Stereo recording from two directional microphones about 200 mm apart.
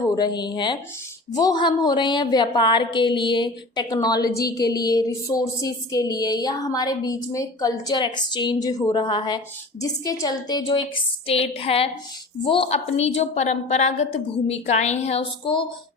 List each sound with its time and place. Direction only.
0.0 s a woman's voice: 20° left (ahead or behind)